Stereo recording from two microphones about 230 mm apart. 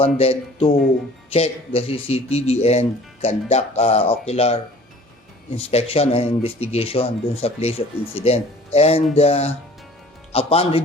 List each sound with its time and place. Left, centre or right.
0.2 s speech: left